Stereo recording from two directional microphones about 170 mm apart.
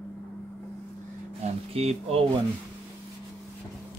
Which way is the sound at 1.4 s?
35° right (ahead or behind).